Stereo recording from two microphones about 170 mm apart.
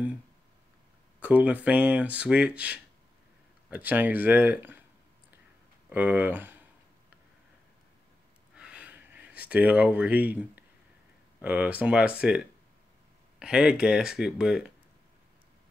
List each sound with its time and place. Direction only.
1.2 s speech: 10° right (ahead or behind)
5.9 s speech: 10° right (ahead or behind)
8.5 s a sound: 5° right (ahead or behind)
11.4 s speech: 10° right (ahead or behind)